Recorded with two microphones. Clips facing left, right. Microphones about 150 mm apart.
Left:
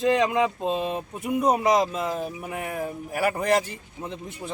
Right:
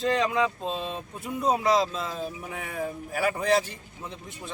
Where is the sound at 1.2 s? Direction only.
15° left (ahead or behind).